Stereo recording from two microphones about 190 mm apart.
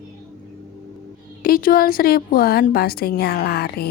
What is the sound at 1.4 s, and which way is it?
Speech, 50° left (ahead or behind).